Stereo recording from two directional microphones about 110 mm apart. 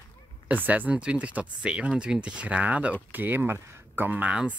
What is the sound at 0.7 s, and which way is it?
Speech, 15° right (ahead or behind).